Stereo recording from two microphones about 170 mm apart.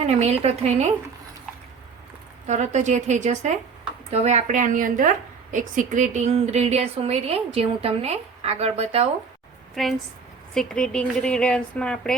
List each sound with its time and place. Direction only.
0.0 s a woman's voice: 40° right (ahead or behind)
2.5 s a woman's voice: 45° right (ahead or behind)
9.8 s a woman's voice: centre (ahead or behind)